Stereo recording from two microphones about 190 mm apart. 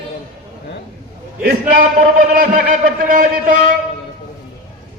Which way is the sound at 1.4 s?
45° right (ahead or behind).